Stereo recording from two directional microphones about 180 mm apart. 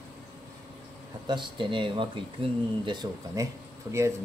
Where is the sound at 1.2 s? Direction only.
25° right (ahead or behind).